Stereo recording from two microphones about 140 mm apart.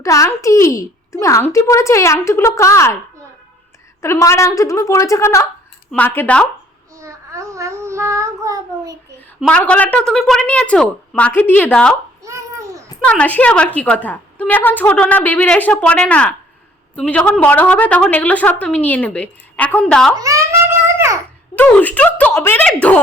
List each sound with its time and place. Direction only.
0.0 s a woman's voice: 20° left (ahead or behind)
4.0 s a woman's voice: 20° left (ahead or behind)
7.0 s child singing: 20° right (ahead or behind)
9.4 s a woman's voice: 10° left (ahead or behind)
12.2 s babbling: 20° right (ahead or behind)
13.1 s a woman's voice: 10° left (ahead or behind)
20.1 s a sound: 20° right (ahead or behind)
21.5 s a woman's voice: 10° left (ahead or behind)